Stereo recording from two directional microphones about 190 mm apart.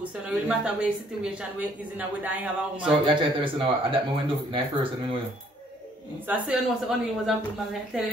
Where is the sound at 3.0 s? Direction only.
25° right (ahead or behind).